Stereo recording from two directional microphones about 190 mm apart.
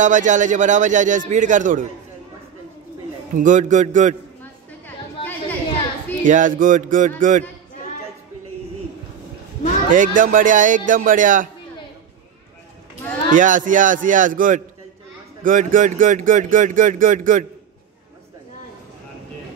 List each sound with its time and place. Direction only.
0.0 s a man's voice: 40° right (ahead or behind)
3.3 s a man's voice: 40° right (ahead or behind)
4.4 s a sound: 10° left (ahead or behind)
6.2 s speech: 40° right (ahead or behind)
9.9 s speech: 45° right (ahead or behind)
13.3 s speech: 45° right (ahead or behind)